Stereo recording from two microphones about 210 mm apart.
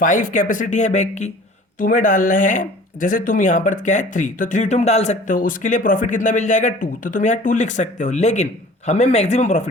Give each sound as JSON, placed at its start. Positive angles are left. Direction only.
{"t": 0.0, "sound": "speech", "side_deg": 40}